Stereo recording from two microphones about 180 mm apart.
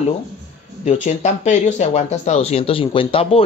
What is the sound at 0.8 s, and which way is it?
Speech, 40° left (ahead or behind).